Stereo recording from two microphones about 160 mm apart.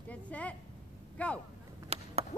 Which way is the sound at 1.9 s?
40° right (ahead or behind).